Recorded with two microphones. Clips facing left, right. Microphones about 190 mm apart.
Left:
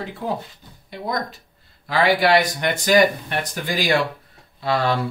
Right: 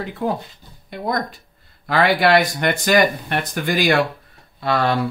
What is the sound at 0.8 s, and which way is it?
Speech, 55° right (ahead or behind).